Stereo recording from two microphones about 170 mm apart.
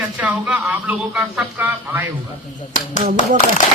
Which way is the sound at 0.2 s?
10° right (ahead or behind).